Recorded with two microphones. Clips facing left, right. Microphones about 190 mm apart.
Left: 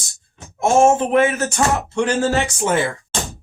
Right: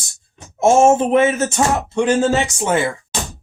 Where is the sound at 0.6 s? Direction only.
25° right (ahead or behind).